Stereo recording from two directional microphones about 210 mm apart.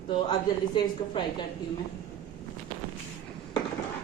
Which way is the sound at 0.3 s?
20° left (ahead or behind).